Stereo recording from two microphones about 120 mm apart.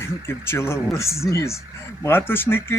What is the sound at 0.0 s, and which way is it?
Speech, 20° left (ahead or behind).